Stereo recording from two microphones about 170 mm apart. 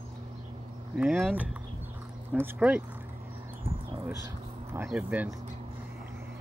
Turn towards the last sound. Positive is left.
turn(degrees=-10)  # may be behind; listen again after turning